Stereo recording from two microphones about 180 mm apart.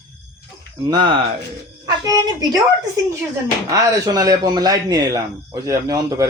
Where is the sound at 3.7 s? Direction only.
20° right (ahead or behind).